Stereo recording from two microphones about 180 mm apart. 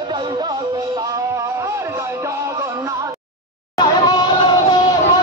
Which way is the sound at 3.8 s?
25° left (ahead or behind).